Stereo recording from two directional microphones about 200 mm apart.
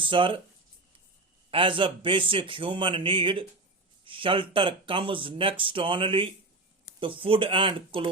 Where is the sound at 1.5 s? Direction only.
25° right (ahead or behind).